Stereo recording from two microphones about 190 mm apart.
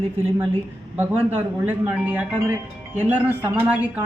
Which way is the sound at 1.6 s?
10° right (ahead or behind).